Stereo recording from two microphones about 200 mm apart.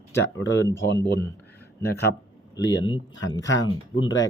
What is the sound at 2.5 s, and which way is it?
Speech, 20° left (ahead or behind).